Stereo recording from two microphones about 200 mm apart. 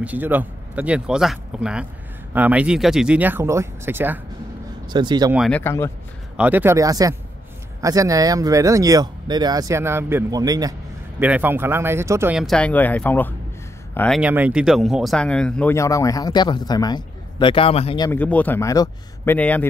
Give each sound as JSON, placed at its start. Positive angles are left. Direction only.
{"t": 0.0, "sound": "speech", "side_deg": -10}
{"t": 4.8, "sound": "speech", "side_deg": -20}
{"t": 5.5, "sound": "speech", "side_deg": 10}
{"t": 6.3, "sound": "speech", "side_deg": -10}
{"t": 14.2, "sound": "speech", "side_deg": -5}
{"t": 18.1, "sound": "speech", "side_deg": 10}